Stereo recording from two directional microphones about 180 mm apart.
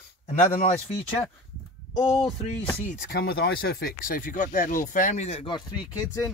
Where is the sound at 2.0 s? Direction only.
25° left (ahead or behind).